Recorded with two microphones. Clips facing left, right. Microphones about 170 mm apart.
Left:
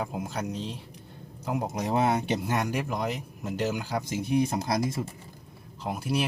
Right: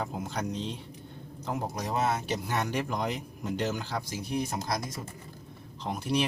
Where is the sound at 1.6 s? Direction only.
25° left (ahead or behind).